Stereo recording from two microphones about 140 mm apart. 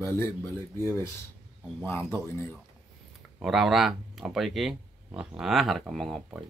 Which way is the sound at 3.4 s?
5° right (ahead or behind).